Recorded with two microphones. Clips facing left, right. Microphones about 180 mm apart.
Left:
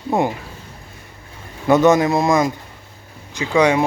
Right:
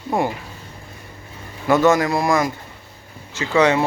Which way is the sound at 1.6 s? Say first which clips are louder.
Left 2 dB; 20° left (ahead or behind).